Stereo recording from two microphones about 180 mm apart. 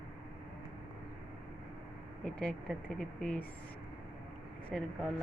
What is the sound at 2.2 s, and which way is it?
Speech, 5° left (ahead or behind).